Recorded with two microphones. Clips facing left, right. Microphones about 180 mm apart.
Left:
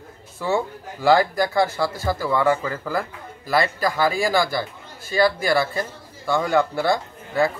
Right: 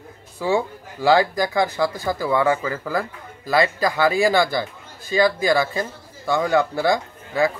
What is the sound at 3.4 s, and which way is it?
A man's voice, 20° right (ahead or behind).